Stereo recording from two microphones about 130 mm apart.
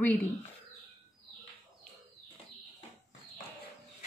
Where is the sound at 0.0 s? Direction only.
15° left (ahead or behind).